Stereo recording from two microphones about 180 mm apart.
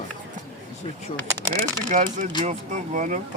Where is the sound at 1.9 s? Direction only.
45° right (ahead or behind).